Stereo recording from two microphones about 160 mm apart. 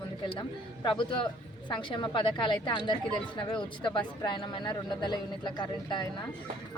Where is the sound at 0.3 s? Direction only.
30° left (ahead or behind).